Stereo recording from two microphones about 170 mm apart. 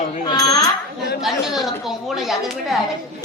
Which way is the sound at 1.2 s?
Centre (ahead or behind).